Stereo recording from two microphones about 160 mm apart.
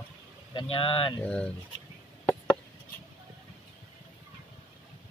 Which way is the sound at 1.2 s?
5° left (ahead or behind).